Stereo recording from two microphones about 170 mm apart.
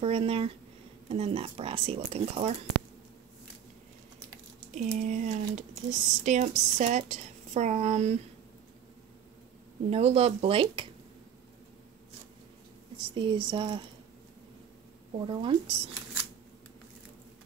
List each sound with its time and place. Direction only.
0.0 s speech: 35° right (ahead or behind)
4.6 s speech: 45° right (ahead or behind)
9.8 s speech: 40° right (ahead or behind)
12.9 s speech: 30° right (ahead or behind)
15.1 s speech: 30° right (ahead or behind)